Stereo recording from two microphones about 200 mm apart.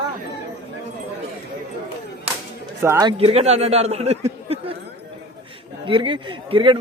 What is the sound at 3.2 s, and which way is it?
Speech, 30° right (ahead or behind).